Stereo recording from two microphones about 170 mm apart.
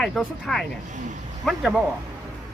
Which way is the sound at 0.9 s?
45° right (ahead or behind).